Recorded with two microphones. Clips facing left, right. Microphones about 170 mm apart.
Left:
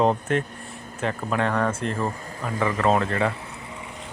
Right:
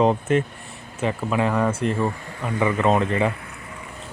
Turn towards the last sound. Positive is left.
turn(degrees=25)  # may be behind; listen again after turning